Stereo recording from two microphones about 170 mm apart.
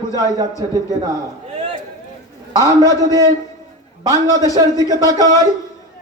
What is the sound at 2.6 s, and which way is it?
A man's voice, 20° right (ahead or behind).